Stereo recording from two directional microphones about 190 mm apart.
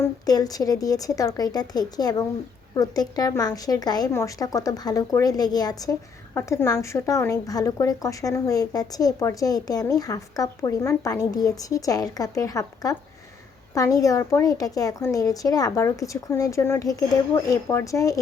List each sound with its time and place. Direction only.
0.0 s a woman's voice: 20° left (ahead or behind)